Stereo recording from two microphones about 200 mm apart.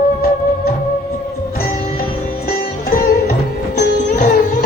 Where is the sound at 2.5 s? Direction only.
45° left (ahead or behind).